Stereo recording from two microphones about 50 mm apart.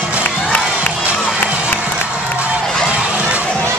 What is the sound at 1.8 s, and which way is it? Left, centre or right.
Crowd, right.